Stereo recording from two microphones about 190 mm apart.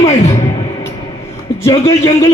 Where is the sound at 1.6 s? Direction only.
15° left (ahead or behind).